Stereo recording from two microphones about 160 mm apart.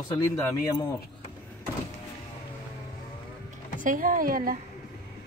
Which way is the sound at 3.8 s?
55° right (ahead or behind).